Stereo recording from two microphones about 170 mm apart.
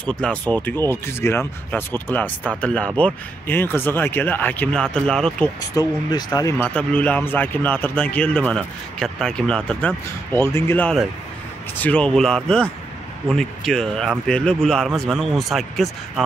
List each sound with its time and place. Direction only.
0.0 s speech: 5° left (ahead or behind)
5.8 s speech: 20° left (ahead or behind)
6.6 s speech: 10° left (ahead or behind)